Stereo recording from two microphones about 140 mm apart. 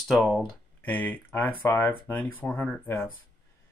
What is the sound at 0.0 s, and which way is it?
Speech, centre (ahead or behind).